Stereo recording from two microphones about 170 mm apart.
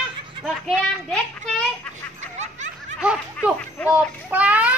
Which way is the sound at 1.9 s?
45° right (ahead or behind).